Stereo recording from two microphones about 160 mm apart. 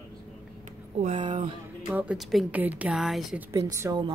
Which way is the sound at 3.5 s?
20° right (ahead or behind).